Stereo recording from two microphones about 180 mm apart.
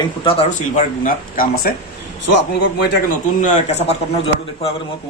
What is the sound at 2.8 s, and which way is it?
Speech, 65° left (ahead or behind).